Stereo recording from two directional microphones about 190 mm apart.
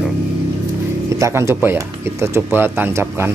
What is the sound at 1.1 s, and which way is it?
Speech, 15° right (ahead or behind).